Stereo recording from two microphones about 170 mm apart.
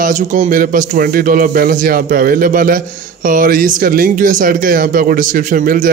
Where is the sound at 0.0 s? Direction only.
50° right (ahead or behind).